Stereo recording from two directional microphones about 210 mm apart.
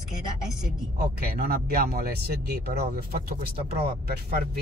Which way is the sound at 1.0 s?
45° right (ahead or behind).